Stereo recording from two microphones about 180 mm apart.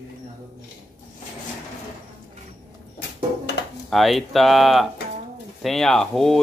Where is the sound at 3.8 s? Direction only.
Centre (ahead or behind).